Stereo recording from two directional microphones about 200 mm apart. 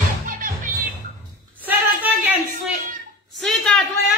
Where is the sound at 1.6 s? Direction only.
10° right (ahead or behind).